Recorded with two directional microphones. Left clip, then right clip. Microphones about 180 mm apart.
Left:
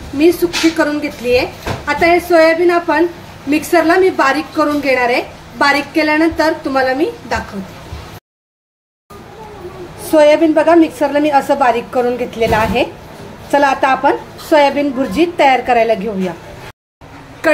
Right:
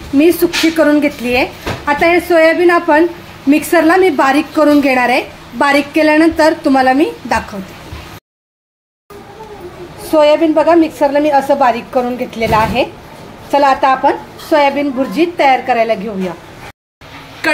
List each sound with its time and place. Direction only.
0.2 s a woman's voice: 45° right (ahead or behind)
10.1 s a woman's voice: centre (ahead or behind)